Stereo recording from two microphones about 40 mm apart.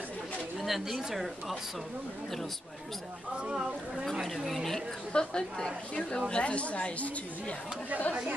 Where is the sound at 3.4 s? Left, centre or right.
Centre.